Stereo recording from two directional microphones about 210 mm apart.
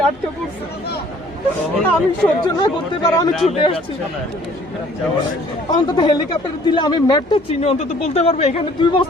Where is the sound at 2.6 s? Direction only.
20° left (ahead or behind).